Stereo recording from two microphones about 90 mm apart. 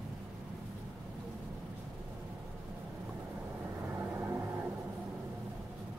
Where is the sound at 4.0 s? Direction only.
25° right (ahead or behind).